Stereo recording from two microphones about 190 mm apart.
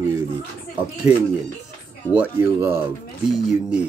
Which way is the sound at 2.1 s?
15° right (ahead or behind).